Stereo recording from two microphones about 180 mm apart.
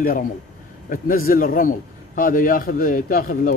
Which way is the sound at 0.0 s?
50° left (ahead or behind).